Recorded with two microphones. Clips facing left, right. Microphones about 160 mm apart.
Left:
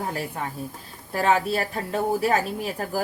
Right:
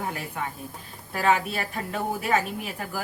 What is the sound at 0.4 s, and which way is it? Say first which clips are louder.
A woman's voice: left 2 dB; 35° left (ahead or behind).